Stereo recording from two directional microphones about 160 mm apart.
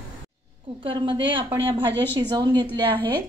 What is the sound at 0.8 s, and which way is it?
Speech, 30° right (ahead or behind).